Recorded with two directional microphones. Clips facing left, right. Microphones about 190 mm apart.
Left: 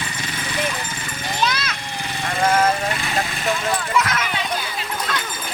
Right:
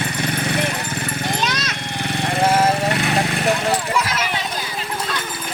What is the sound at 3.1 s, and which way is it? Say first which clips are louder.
Clip-clop: right 4 dB; 65° right (ahead or behind).